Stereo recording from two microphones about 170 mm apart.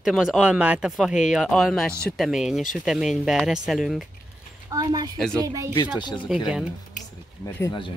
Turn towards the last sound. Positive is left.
turn(degrees=25)  # may be behind; listen again after turning